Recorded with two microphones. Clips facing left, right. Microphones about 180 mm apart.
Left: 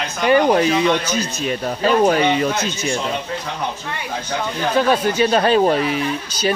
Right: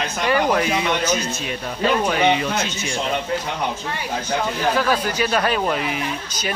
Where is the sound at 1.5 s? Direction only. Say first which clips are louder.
Left 3 dB; 40° left (ahead or behind).